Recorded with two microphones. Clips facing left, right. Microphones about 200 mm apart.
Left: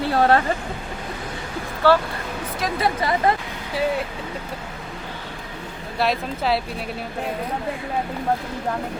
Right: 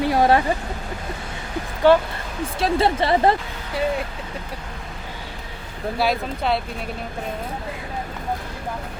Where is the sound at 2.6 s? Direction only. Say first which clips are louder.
Right 4 dB; 30° right (ahead or behind).